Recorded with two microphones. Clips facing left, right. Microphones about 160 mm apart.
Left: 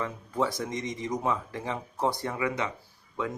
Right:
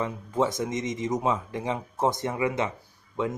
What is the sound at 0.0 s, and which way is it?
Speech, 20° right (ahead or behind).